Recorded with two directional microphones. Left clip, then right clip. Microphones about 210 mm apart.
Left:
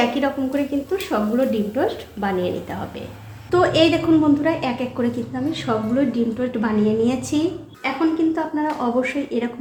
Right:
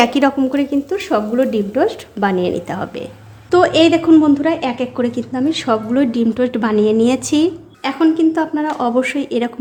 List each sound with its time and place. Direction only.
0.0 s a woman's voice: 55° right (ahead or behind)
3.5 s a woman's voice: 40° right (ahead or behind)